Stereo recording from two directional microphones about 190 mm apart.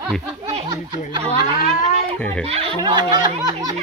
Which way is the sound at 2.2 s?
5° left (ahead or behind).